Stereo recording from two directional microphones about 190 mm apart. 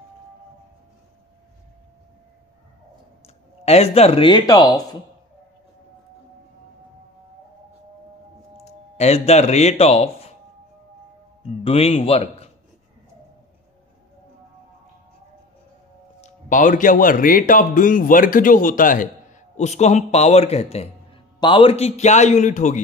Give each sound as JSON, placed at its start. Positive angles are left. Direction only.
{"t": 3.6, "sound": "a man's voice", "side_deg": 35}
{"t": 8.6, "sound": "speech", "side_deg": 35}
{"t": 11.6, "sound": "a man's voice", "side_deg": 30}
{"t": 16.2, "sound": "a man's voice", "side_deg": 40}